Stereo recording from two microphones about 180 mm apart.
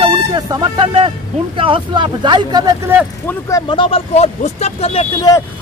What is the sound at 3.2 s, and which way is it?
Speech, 20° left (ahead or behind).